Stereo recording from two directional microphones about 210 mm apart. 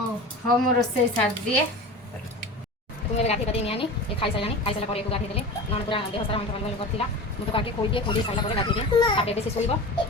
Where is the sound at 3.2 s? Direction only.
30° left (ahead or behind).